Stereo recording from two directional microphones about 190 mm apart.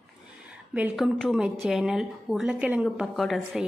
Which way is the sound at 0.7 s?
5° right (ahead or behind).